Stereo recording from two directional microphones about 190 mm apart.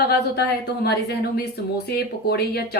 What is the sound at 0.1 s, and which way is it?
A woman's voice, 60° left (ahead or behind).